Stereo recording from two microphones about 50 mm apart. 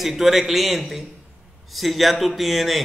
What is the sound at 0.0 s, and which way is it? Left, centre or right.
Speech, centre.